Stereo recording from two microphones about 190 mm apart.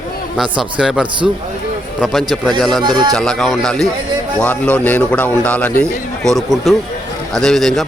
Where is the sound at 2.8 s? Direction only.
25° right (ahead or behind).